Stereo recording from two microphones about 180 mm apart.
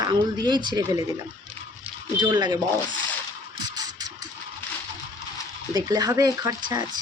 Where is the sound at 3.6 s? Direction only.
20° right (ahead or behind).